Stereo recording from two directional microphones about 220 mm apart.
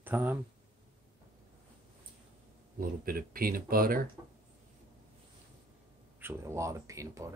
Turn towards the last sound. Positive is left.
turn(degrees=-15)  # may be behind; listen again after turning